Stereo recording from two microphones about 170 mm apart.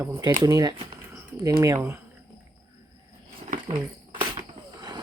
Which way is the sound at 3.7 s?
25° right (ahead or behind).